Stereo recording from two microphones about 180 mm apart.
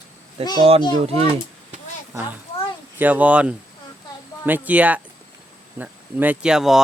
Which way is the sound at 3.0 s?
10° right (ahead or behind).